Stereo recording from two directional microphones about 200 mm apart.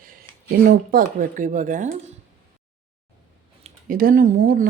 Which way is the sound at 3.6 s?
40° right (ahead or behind).